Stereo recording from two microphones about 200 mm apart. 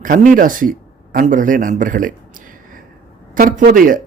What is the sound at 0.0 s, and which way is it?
Speech, 40° right (ahead or behind).